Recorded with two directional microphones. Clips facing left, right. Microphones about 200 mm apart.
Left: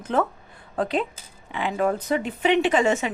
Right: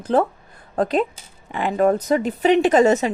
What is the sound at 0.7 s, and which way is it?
A woman's voice, 45° right (ahead or behind).